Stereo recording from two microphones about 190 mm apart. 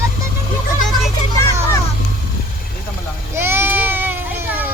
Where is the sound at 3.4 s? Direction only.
10° right (ahead or behind).